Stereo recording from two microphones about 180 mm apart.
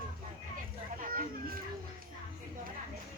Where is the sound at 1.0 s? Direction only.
50° right (ahead or behind).